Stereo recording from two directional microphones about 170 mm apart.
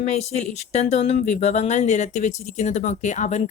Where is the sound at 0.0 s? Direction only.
40° left (ahead or behind).